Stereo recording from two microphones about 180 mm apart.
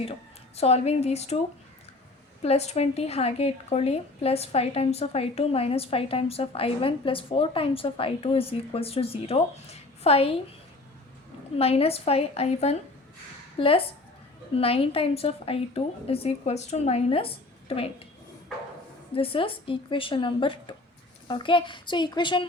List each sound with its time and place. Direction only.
0.0 s speech: 35° left (ahead or behind)
2.4 s a woman's voice: 35° left (ahead or behind)
11.5 s a woman's voice: 35° left (ahead or behind)
19.1 s speech: 30° left (ahead or behind)